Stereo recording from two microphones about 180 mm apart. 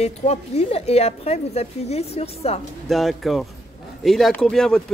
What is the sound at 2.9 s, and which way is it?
Speech, centre (ahead or behind).